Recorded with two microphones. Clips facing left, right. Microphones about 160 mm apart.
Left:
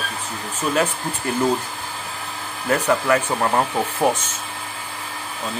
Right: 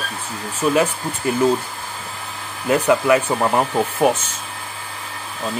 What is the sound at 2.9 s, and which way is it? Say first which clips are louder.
Speech: right 4 dB; 10° right (ahead or behind).